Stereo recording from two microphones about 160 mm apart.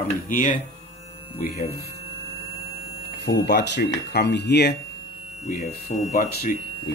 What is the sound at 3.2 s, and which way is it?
Speech, 90° left.